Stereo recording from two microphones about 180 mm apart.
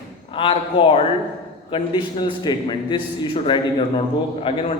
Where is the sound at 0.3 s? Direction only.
30° left (ahead or behind).